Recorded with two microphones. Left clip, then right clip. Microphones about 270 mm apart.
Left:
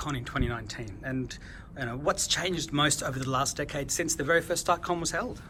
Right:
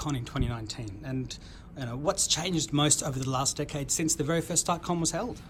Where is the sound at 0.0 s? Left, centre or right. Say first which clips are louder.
Left 2 dB; centre.